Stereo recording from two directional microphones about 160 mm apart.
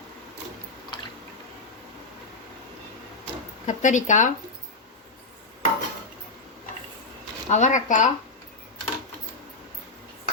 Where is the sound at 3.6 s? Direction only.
50° left (ahead or behind).